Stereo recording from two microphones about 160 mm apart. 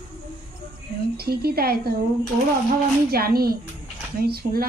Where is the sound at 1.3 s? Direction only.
75° right (ahead or behind).